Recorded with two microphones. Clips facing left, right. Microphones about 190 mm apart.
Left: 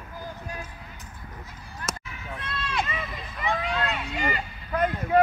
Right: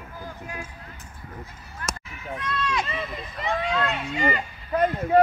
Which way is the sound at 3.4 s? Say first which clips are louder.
Right 2 dB; 35° right (ahead or behind).